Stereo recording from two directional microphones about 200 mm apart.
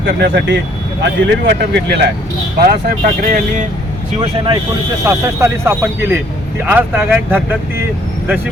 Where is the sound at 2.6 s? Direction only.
45° right (ahead or behind).